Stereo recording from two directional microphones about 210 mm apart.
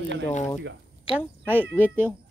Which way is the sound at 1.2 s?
10° right (ahead or behind).